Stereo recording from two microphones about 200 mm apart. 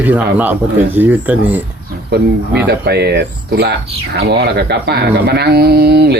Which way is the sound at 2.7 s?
55° right (ahead or behind).